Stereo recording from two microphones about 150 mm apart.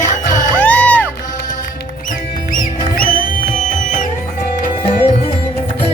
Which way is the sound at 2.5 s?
65° left (ahead or behind).